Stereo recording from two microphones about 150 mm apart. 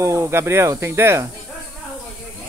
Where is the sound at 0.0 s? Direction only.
20° right (ahead or behind).